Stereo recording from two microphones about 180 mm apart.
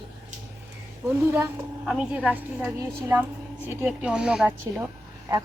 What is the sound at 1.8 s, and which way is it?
A woman's voice, 5° right (ahead or behind).